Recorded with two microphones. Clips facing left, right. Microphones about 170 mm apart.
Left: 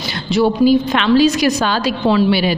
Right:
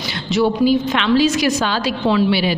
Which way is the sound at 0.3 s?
40° left (ahead or behind).